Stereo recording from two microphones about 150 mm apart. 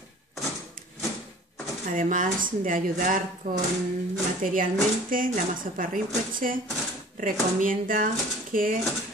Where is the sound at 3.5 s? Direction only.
75° right (ahead or behind).